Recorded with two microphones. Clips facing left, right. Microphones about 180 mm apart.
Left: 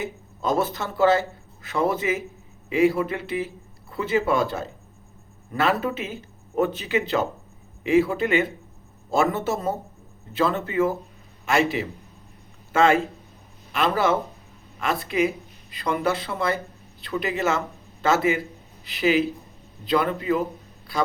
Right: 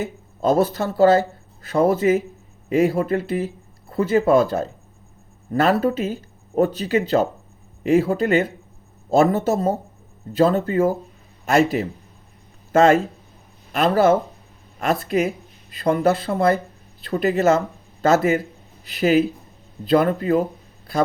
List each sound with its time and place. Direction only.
0.4 s speech: 40° right (ahead or behind)